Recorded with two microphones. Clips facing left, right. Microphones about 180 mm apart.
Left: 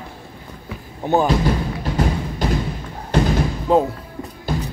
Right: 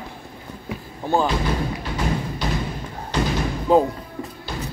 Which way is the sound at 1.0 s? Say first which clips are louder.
Left 3 dB; 20° left (ahead or behind).